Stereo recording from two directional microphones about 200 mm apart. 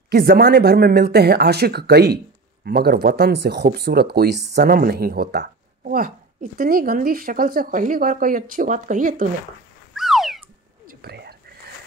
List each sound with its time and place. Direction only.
0.1 s speech: 50° right (ahead or behind)
9.9 s cat: centre (ahead or behind)
10.9 s whispering: 50° right (ahead or behind)